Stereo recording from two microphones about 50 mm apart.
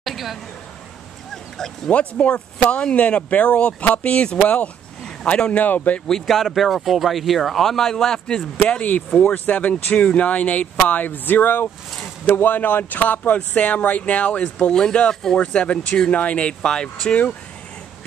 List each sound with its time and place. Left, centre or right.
0.0 s speech: centre
1.9 s speech: left
4.4 s speech: left
5.0 s speech: centre; by 5.9 s left
6.2 s speech: centre
8.6 s speech: left
14.7 s speech: centre
17.1 s speech: left